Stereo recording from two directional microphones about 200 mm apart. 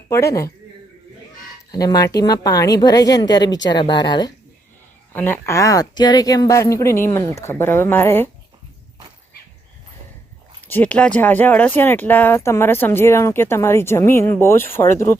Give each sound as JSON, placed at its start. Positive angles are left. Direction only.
{"t": 0.1, "sound": "speech", "side_deg": 15}
{"t": 1.7, "sound": "a woman's voice", "side_deg": 20}
{"t": 5.1, "sound": "speech", "side_deg": 10}
{"t": 10.7, "sound": "speech", "side_deg": 10}